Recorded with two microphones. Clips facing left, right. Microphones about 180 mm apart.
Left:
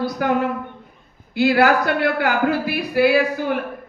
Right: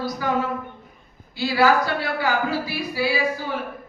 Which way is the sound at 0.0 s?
60° left (ahead or behind).